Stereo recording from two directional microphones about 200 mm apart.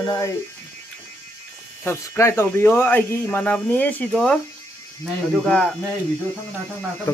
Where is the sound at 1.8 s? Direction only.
10° left (ahead or behind).